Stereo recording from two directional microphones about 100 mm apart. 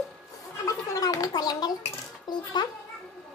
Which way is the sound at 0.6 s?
35° left (ahead or behind).